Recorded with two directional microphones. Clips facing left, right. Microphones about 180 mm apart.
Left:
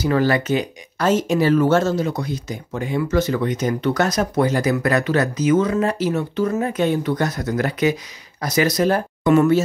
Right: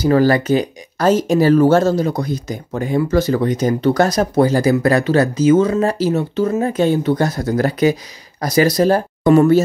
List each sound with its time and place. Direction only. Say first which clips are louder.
0.0 s speech: right 5 dB; 40° right (ahead or behind)